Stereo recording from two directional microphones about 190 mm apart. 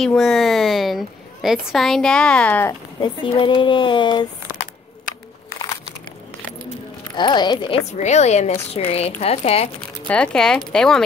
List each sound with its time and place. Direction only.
0.0 s a woman's voice: centre (ahead or behind)
3.0 s speech: 25° left (ahead or behind)
7.2 s speech: 25° left (ahead or behind)
8.0 s a woman's voice: 35° left (ahead or behind)
9.8 s a woman's voice: 5° left (ahead or behind)